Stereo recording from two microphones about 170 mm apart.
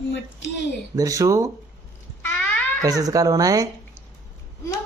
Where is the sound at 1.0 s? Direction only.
20° right (ahead or behind).